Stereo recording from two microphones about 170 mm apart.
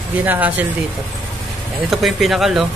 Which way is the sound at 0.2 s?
10° right (ahead or behind).